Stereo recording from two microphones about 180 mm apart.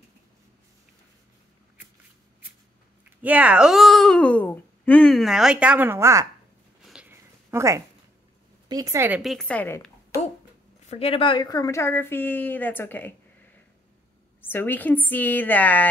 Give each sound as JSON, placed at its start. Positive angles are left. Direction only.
{"t": 3.2, "sound": "speech", "side_deg": -10}
{"t": 6.8, "sound": "a sound", "side_deg": -5}
{"t": 8.6, "sound": "speech", "side_deg": -20}
{"t": 9.2, "sound": "a woman's voice", "side_deg": 0}
{"t": 10.9, "sound": "speech", "side_deg": 35}
{"t": 14.4, "sound": "speech", "side_deg": 10}